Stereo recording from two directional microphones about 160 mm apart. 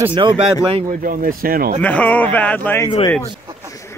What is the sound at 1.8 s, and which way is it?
A man's voice, 10° left (ahead or behind).